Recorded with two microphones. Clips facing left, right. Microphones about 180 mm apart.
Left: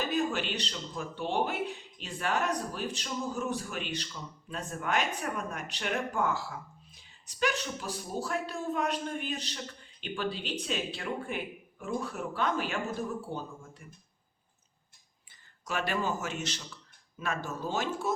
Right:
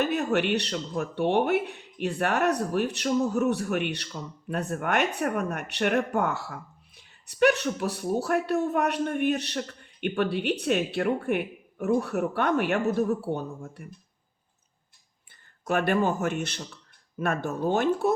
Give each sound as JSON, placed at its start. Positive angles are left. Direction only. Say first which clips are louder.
{"t": 0.0, "sound": "speech", "louder": "right 6 dB", "side_deg": -65}
{"t": 15.6, "sound": "speech", "louder": "right 8 dB", "side_deg": -55}